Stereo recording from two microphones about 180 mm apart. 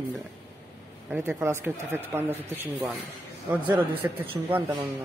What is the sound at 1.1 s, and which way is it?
Speech, 10° right (ahead or behind).